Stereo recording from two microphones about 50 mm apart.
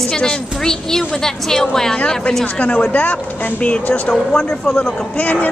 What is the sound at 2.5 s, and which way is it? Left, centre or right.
Speech, left.